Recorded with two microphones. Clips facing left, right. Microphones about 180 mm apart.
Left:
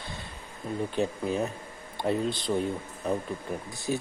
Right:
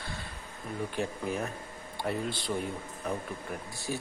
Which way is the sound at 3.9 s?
20° left (ahead or behind).